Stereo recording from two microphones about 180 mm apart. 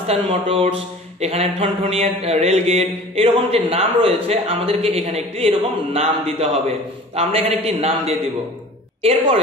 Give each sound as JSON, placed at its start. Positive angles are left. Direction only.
{"t": 0.0, "sound": "speech", "side_deg": -35}